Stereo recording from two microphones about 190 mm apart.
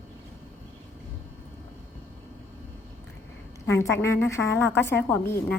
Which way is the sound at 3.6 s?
15° left (ahead or behind).